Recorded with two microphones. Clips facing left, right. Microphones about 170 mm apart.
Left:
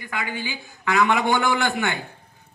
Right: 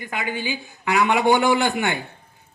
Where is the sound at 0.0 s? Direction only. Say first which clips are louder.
Right 2 dB; 20° right (ahead or behind).